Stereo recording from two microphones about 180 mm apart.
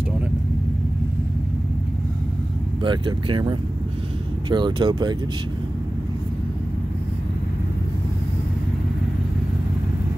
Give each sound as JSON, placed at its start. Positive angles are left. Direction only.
{"t": 2.8, "sound": "speech", "side_deg": -25}